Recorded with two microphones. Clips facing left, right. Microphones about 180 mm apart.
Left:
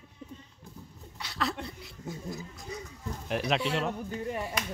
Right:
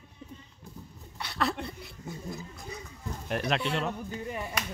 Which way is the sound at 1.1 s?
60° right (ahead or behind).